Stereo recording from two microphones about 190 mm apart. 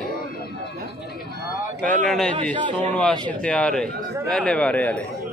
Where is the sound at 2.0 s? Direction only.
Centre (ahead or behind).